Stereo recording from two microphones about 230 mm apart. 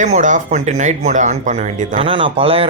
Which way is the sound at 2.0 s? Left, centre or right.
Right.